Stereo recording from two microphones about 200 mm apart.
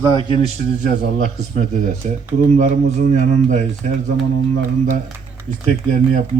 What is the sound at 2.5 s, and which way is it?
A man's voice, 35° right (ahead or behind).